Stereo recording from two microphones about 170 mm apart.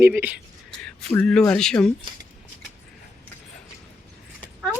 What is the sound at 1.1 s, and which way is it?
Speech, 5° left (ahead or behind).